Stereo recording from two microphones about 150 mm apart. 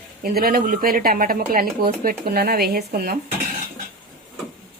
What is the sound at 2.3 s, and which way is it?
Speech, 90° right.